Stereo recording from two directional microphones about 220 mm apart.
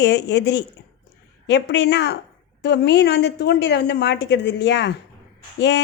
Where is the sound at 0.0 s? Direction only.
50° left (ahead or behind).